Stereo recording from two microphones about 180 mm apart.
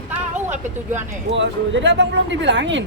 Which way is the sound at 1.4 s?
90° right.